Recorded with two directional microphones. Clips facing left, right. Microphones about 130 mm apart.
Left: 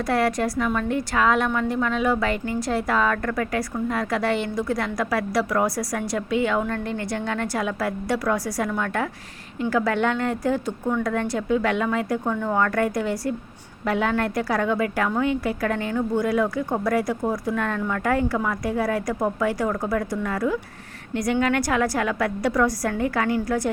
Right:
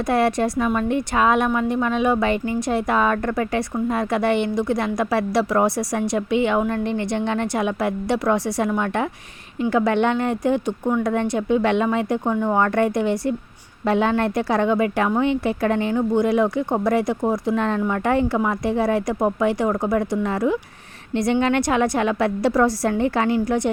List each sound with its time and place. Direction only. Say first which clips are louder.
0.1 s a woman's voice: right 3 dB; 25° right (ahead or behind)